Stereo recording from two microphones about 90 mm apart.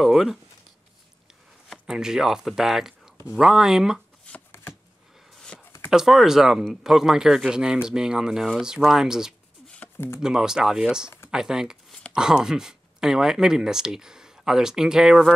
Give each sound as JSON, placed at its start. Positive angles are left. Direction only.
{"t": 0.0, "sound": "speech", "side_deg": 0}
{"t": 1.9, "sound": "speech", "side_deg": -5}
{"t": 5.5, "sound": "a sound", "side_deg": 10}
{"t": 5.9, "sound": "speech", "side_deg": -5}
{"t": 9.9, "sound": "speech", "side_deg": 25}
{"t": 10.2, "sound": "speech", "side_deg": -5}